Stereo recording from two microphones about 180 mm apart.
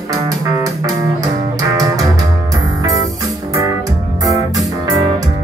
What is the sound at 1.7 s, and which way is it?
Music, 20° right (ahead or behind).